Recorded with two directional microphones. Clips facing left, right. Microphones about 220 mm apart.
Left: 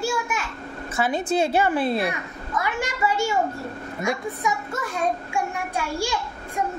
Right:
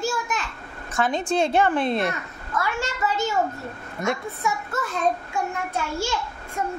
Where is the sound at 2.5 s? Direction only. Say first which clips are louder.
Even; 15° left (ahead or behind).